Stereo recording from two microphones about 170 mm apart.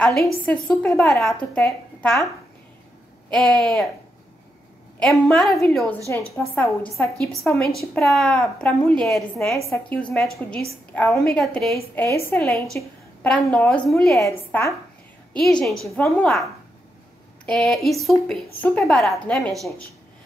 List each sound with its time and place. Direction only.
0.0 s a woman's voice: centre (ahead or behind)
3.3 s a woman's voice: centre (ahead or behind)
4.9 s a woman's voice: 5° left (ahead or behind)
6.0 s a woman's voice: 15° left (ahead or behind)
8.0 s a woman's voice: centre (ahead or behind)
11.7 s a woman's voice: 15° left (ahead or behind)
14.2 s a woman's voice: 15° left (ahead or behind)
15.6 s a woman's voice: centre (ahead or behind)
17.5 s a woman's voice: 5° left (ahead or behind)